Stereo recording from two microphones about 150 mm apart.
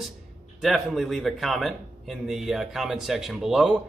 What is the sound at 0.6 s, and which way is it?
A man's voice, centre (ahead or behind).